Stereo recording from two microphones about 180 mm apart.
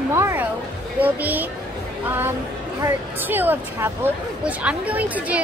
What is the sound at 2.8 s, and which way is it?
Speech, 10° right (ahead or behind).